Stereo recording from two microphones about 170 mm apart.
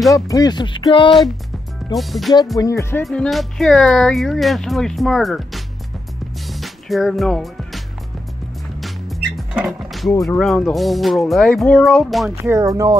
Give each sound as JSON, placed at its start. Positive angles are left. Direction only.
{"t": 0.1, "sound": "speech", "side_deg": 20}
{"t": 2.0, "sound": "speech", "side_deg": 0}
{"t": 2.6, "sound": "speech", "side_deg": 15}
{"t": 3.1, "sound": "speech", "side_deg": 0}
{"t": 6.5, "sound": "music", "side_deg": 0}
{"t": 9.5, "sound": "speech", "side_deg": -5}
{"t": 12.4, "sound": "speech", "side_deg": -20}